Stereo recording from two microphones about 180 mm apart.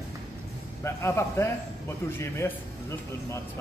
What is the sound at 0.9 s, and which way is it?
A man's voice, 15° left (ahead or behind).